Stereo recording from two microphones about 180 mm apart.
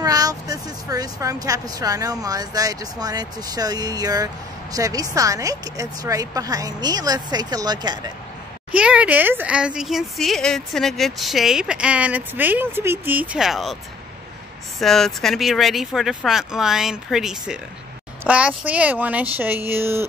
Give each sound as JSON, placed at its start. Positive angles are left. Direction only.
{"t": 0.0, "sound": "speech", "side_deg": -20}
{"t": 8.7, "sound": "a woman's voice", "side_deg": -5}
{"t": 14.8, "sound": "a woman's voice", "side_deg": 0}